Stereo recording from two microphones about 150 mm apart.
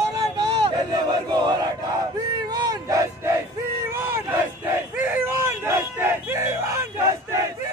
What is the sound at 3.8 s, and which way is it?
Battle cry, 15° right (ahead or behind).